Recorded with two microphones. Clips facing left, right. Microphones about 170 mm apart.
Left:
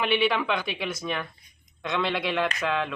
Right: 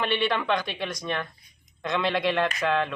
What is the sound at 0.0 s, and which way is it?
Speech, 5° left (ahead or behind).